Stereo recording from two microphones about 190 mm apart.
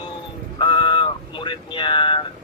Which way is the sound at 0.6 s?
25° left (ahead or behind).